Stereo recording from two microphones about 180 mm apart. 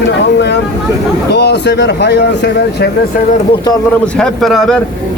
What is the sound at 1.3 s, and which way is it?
Speech, 65° left (ahead or behind).